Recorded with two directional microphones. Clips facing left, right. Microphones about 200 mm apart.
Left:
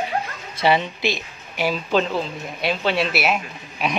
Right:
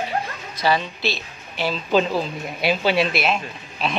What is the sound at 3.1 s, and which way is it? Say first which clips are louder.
Speech: even; 10° left (ahead or behind).